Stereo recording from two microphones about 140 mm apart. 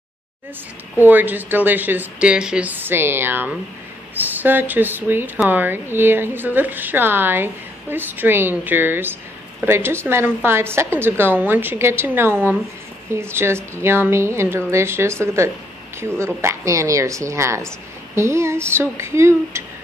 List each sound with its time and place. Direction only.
1.0 s a woman's voice: 15° right (ahead or behind)